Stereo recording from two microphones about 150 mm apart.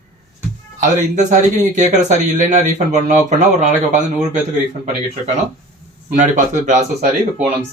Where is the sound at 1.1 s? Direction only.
50° right (ahead or behind).